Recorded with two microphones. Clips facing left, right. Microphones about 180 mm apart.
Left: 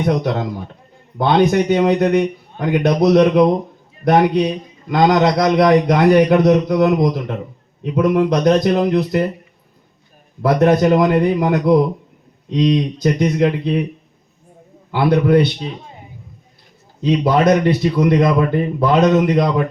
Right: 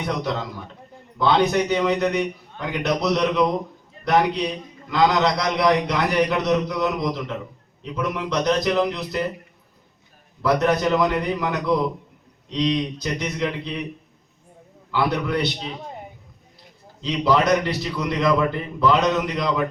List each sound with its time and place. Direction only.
0.0 s a man's voice: 50° left (ahead or behind)
10.4 s a man's voice: 50° left (ahead or behind)
14.9 s a man's voice: 50° left (ahead or behind)
17.0 s a man's voice: 55° left (ahead or behind)